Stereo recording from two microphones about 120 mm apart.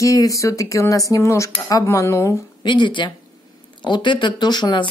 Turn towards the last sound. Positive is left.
turn(degrees=40)  # may be behind; listen again after turning